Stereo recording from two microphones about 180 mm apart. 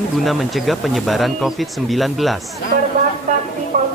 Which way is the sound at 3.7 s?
50° right (ahead or behind).